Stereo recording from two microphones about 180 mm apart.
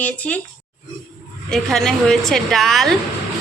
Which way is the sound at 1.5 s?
5° left (ahead or behind).